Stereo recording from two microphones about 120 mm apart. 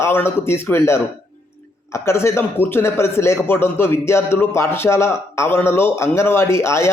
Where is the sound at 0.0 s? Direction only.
20° left (ahead or behind).